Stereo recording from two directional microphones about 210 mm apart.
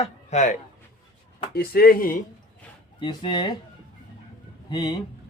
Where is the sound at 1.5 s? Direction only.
45° left (ahead or behind).